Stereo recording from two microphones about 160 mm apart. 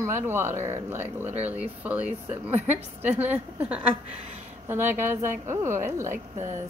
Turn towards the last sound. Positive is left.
turn(degrees=-15)  # may be behind; listen again after turning